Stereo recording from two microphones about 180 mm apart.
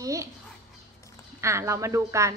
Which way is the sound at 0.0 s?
20° right (ahead or behind).